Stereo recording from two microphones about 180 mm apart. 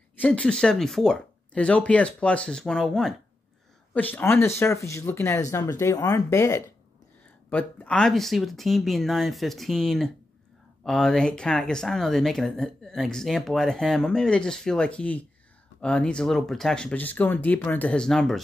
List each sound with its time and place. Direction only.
0.2 s speech: 5° left (ahead or behind)